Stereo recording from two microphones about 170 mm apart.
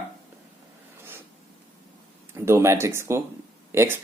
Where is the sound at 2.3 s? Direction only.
15° right (ahead or behind).